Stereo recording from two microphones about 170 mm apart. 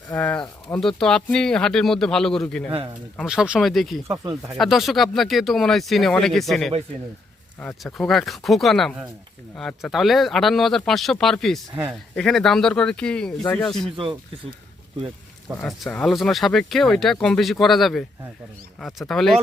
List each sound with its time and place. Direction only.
0.1 s speech: 10° left (ahead or behind)
4.1 s speech: 20° right (ahead or behind)
4.5 s speech: centre (ahead or behind)
7.9 s speech: centre (ahead or behind)
13.9 s speech: 30° right (ahead or behind)
15.6 s speech: centre (ahead or behind)